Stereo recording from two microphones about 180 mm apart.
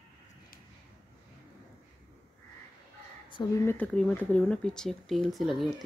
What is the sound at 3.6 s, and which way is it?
Speech, 10° left (ahead or behind).